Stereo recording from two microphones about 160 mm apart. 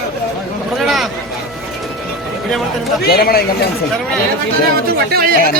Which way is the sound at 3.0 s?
70° left (ahead or behind).